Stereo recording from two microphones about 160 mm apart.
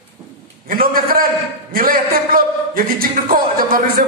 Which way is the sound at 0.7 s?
65° right (ahead or behind).